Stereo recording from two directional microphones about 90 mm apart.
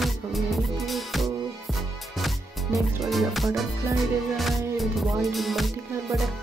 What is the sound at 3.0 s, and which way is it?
Music, centre (ahead or behind).